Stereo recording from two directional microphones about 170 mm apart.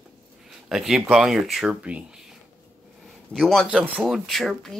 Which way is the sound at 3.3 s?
Centre (ahead or behind).